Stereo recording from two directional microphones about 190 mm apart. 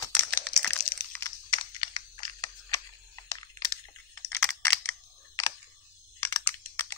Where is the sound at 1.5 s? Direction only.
25° left (ahead or behind).